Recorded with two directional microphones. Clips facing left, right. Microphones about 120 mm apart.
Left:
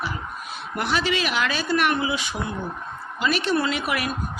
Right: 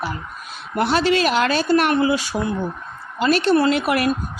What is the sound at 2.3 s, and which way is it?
Speech, 50° right (ahead or behind).